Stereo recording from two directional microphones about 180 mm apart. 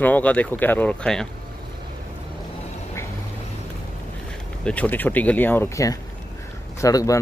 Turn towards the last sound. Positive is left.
turn(degrees=20)  # may be behind; listen again after turning